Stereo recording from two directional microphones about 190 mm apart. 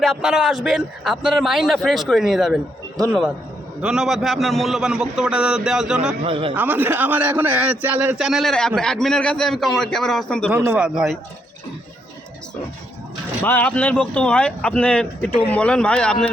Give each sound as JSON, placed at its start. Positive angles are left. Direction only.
{"t": 0.0, "sound": "a man's voice", "side_deg": 0}
{"t": 6.2, "sound": "a man's voice", "side_deg": -30}
{"t": 6.5, "sound": "a man's voice", "side_deg": -10}
{"t": 10.6, "sound": "a man's voice", "side_deg": -5}
{"t": 13.4, "sound": "a man's voice", "side_deg": 10}